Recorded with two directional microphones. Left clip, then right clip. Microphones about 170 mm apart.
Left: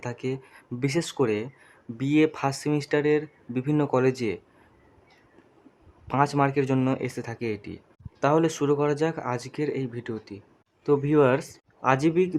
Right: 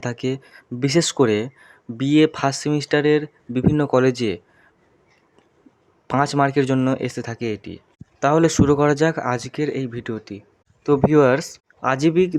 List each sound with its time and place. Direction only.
0.0 s speech: 20° right (ahead or behind)
6.1 s speech: 25° right (ahead or behind)